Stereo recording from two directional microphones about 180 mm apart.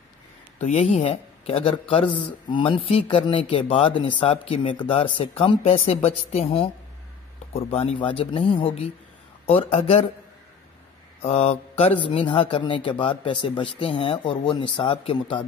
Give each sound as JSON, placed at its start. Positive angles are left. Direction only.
{"t": 0.6, "sound": "a man's voice", "side_deg": 35}
{"t": 11.2, "sound": "speech", "side_deg": 35}